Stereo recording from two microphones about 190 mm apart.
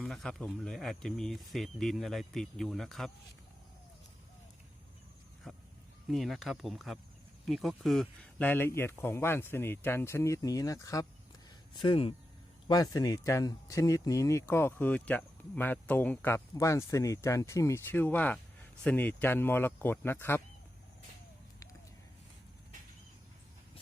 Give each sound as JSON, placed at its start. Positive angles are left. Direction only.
{"t": 0.0, "sound": "speech", "side_deg": 0}
{"t": 5.5, "sound": "speech", "side_deg": 0}